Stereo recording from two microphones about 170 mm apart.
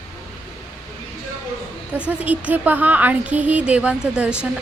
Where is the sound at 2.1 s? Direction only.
10° right (ahead or behind).